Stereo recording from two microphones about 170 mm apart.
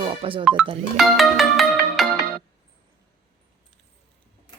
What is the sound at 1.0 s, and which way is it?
Music, centre (ahead or behind).